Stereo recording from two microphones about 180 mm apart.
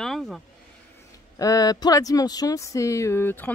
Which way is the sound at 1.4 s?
20° left (ahead or behind).